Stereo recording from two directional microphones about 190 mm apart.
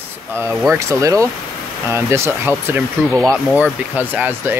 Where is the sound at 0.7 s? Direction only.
15° right (ahead or behind).